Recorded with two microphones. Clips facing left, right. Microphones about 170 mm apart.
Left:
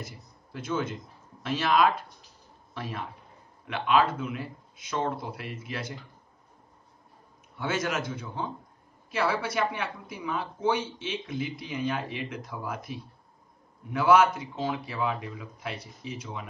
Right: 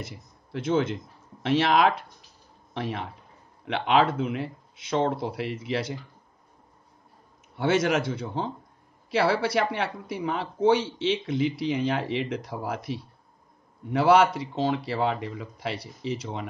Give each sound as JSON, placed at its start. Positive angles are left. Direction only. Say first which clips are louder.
{"t": 0.0, "sound": "a man's voice", "louder": "right 3 dB", "side_deg": -70}
{"t": 7.5, "sound": "speech", "louder": "right 7 dB", "side_deg": -70}